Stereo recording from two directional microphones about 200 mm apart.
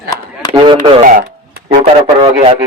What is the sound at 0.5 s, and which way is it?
Speech, 25° right (ahead or behind).